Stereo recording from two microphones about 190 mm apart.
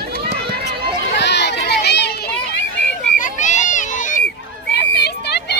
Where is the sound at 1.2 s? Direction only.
65° left (ahead or behind).